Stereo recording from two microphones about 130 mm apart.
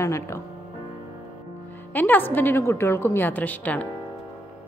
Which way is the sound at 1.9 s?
15° left (ahead or behind).